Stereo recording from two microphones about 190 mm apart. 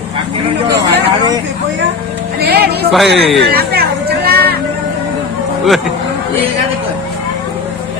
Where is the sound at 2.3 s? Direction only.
55° right (ahead or behind).